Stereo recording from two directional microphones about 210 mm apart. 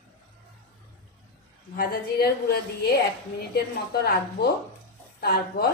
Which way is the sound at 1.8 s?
45° left (ahead or behind).